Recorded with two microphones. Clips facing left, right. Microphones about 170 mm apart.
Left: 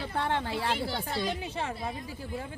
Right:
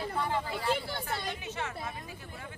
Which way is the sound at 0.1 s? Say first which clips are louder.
Left 5 dB; 75° left (ahead or behind).